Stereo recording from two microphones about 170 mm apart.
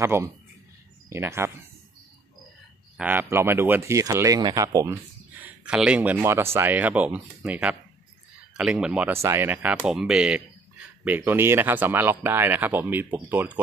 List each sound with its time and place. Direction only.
0.0 s speech: 15° right (ahead or behind)
3.0 s speech: 10° right (ahead or behind)
5.4 s speech: 5° right (ahead or behind)